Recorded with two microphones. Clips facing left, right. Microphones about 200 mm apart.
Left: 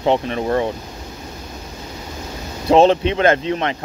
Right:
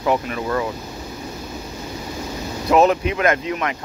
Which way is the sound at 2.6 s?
30° left (ahead or behind).